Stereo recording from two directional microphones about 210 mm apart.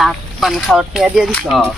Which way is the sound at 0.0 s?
Centre (ahead or behind).